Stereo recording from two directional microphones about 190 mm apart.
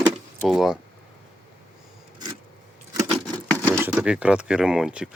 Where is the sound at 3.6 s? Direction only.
15° right (ahead or behind).